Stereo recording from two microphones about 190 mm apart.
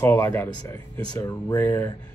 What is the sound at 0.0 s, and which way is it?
Speech, 10° left (ahead or behind).